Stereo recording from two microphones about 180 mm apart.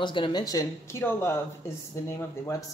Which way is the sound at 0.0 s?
25° left (ahead or behind).